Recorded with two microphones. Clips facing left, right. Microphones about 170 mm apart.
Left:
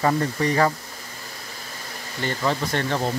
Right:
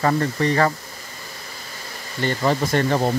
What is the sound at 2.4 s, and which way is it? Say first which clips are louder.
Speech: right 5 dB; 10° right (ahead or behind).